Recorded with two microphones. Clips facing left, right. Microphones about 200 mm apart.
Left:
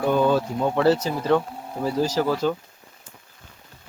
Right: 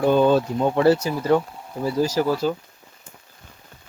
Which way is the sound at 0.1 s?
25° right (ahead or behind).